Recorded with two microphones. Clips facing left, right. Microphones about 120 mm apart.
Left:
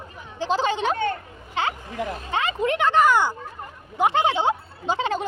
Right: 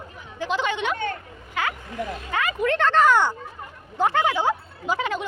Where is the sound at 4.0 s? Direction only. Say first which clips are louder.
Left 1 dB; 20° left (ahead or behind).